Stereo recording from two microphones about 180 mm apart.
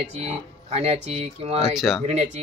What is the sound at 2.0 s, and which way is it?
Speech, 35° right (ahead or behind).